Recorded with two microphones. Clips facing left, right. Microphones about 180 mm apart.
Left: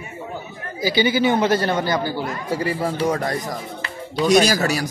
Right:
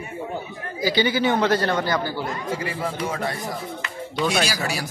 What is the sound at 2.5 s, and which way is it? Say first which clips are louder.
Speech: left 8 dB; 35° left (ahead or behind).